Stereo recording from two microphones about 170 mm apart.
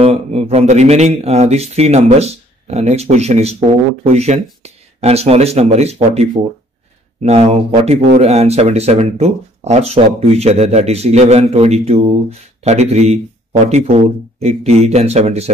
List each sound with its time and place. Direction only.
0.0 s speech: 35° right (ahead or behind)